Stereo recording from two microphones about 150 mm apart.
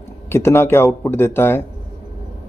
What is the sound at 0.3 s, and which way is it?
Speech, 15° left (ahead or behind).